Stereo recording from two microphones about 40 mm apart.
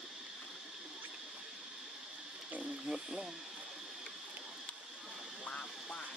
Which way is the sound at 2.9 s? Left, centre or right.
Centre.